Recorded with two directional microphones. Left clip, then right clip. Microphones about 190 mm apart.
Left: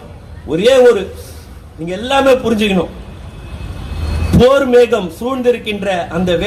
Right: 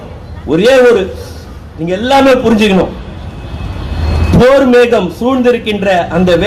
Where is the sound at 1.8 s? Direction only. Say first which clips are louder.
Right 4 dB; 20° left (ahead or behind).